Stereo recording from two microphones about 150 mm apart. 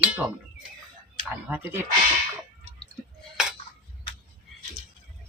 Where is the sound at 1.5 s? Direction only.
15° right (ahead or behind).